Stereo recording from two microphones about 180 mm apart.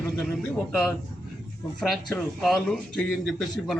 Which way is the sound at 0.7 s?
Centre (ahead or behind).